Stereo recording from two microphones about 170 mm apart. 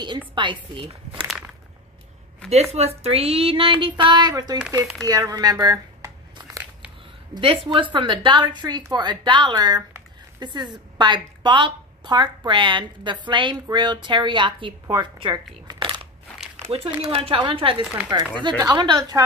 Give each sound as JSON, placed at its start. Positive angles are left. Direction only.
{"t": 0.3, "sound": "a woman's voice", "side_deg": -30}
{"t": 2.5, "sound": "speech", "side_deg": -40}
{"t": 5.0, "sound": "crumpling", "side_deg": -20}
{"t": 7.3, "sound": "a woman's voice", "side_deg": -30}